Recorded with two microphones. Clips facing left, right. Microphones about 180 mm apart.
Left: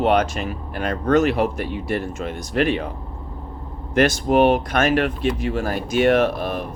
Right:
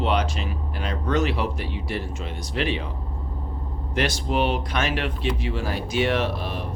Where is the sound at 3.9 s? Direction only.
50° left (ahead or behind).